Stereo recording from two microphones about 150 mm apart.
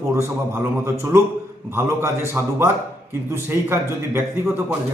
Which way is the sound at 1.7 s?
15° right (ahead or behind).